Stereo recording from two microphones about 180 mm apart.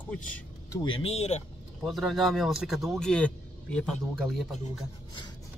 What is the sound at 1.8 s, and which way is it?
Speech, centre (ahead or behind).